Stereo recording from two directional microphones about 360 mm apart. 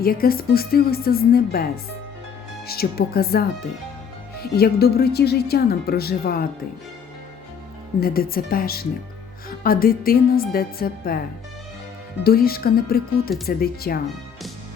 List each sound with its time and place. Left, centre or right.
0.0 s speech: left
8.0 s speech: left
12.2 s speech: left